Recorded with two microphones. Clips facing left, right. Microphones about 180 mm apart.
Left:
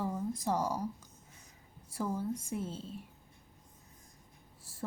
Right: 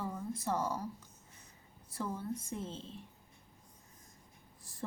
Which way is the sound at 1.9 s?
10° left (ahead or behind).